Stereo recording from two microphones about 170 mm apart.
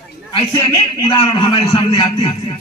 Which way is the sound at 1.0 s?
25° left (ahead or behind).